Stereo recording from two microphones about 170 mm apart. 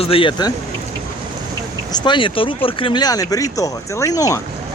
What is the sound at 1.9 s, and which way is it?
Speech, 30° left (ahead or behind).